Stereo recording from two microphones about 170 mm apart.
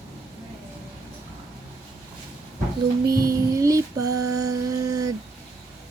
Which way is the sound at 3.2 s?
20° right (ahead or behind).